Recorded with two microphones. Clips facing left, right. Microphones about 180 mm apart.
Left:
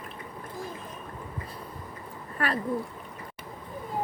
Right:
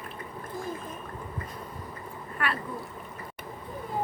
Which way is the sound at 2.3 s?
40° left (ahead or behind).